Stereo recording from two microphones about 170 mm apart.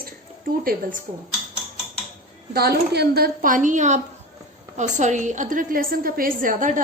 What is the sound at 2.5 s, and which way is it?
A woman's voice, 70° right (ahead or behind).